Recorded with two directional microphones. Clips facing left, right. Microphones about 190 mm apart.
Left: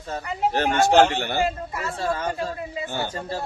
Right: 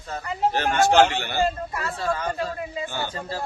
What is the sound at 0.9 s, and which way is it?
Speech, 50° left (ahead or behind).